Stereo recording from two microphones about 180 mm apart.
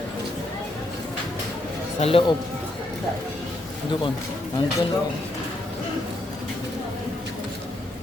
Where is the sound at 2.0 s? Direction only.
30° left (ahead or behind).